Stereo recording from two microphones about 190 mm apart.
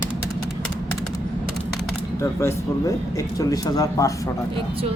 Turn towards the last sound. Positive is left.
turn(degrees=20)  # may be behind; listen again after turning